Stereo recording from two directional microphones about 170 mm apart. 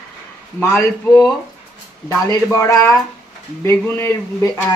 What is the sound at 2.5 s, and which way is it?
Speech, 15° left (ahead or behind).